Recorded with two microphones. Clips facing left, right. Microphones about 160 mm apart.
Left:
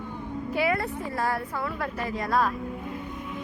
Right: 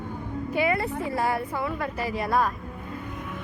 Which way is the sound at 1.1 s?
15° right (ahead or behind).